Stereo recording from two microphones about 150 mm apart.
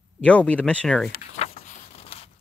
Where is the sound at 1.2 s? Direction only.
45° left (ahead or behind).